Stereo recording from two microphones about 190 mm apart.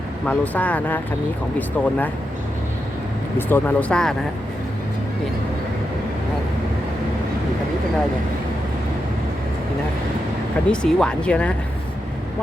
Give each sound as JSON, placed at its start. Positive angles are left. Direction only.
{"t": 0.3, "sound": "speech", "side_deg": 10}
{"t": 3.3, "sound": "speech", "side_deg": 10}
{"t": 10.7, "sound": "speech", "side_deg": 5}